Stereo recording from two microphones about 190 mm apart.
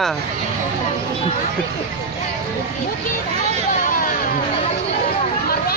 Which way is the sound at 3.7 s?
45° left (ahead or behind).